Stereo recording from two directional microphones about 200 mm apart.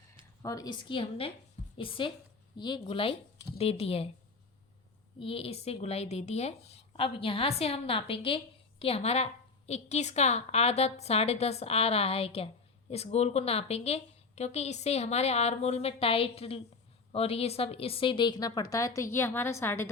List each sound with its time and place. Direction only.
0.4 s a woman's voice: 20° left (ahead or behind)
5.2 s a woman's voice: 25° left (ahead or behind); by 19.9 s 10° left (ahead or behind)